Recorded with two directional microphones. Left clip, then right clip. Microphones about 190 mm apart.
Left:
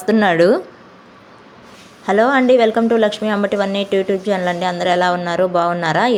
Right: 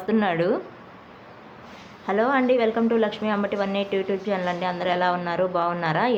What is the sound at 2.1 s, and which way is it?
Speech, 35° left (ahead or behind).